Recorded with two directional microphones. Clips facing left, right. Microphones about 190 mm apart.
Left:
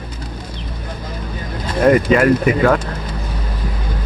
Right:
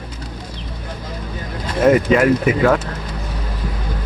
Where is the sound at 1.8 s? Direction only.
Centre (ahead or behind).